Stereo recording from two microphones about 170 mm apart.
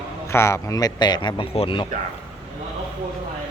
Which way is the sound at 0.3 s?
15° left (ahead or behind).